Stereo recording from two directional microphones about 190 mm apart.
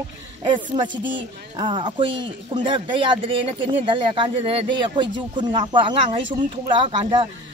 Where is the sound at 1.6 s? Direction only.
25° right (ahead or behind).